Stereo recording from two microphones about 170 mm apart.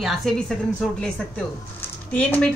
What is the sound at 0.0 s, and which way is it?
A woman's voice, centre (ahead or behind).